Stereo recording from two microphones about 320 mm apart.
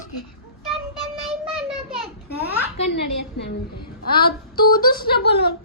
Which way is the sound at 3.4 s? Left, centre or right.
Left.